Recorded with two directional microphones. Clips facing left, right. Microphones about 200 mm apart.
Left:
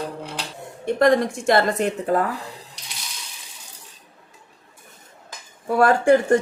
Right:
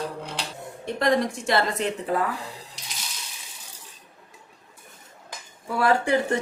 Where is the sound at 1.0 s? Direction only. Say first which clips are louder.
Left 5 dB; 50° left (ahead or behind).